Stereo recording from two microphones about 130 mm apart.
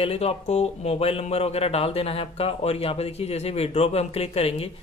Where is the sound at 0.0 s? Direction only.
45° left (ahead or behind).